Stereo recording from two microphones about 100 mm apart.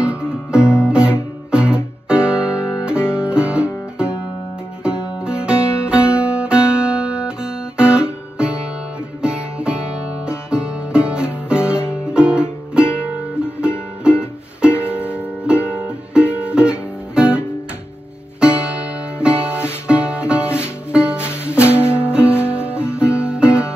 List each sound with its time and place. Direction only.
0.0 s music: 10° right (ahead or behind)
21.8 s music: 25° left (ahead or behind)
22.1 s music: 10° right (ahead or behind)
22.5 s guitar: 10° right (ahead or behind)